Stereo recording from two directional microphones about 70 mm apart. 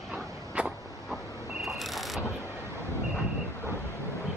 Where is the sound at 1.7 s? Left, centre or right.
Centre.